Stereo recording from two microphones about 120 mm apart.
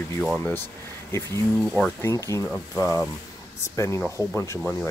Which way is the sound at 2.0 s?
25° left (ahead or behind).